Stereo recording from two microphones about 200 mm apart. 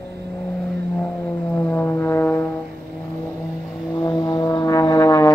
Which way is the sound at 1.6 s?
10° left (ahead or behind).